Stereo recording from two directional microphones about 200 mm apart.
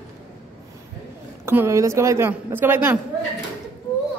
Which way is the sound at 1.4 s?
15° right (ahead or behind).